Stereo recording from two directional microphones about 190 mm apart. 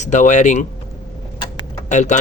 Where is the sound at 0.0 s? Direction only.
40° left (ahead or behind).